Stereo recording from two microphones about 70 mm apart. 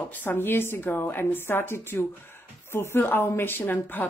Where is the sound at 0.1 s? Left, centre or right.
Left.